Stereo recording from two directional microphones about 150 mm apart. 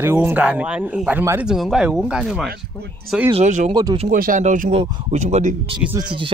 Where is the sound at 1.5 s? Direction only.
Centre (ahead or behind).